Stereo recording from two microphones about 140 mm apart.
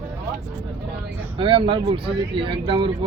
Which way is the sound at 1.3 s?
40° right (ahead or behind).